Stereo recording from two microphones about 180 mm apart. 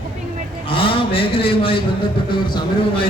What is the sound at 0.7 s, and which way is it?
A man's voice, 30° left (ahead or behind).